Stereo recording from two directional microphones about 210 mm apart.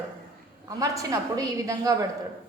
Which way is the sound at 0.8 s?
15° right (ahead or behind).